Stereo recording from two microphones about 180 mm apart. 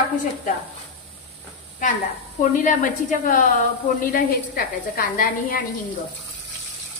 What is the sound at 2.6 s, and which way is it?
A woman's voice, 45° left (ahead or behind).